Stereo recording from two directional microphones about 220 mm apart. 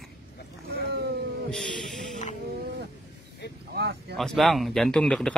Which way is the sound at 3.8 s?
45° right (ahead or behind).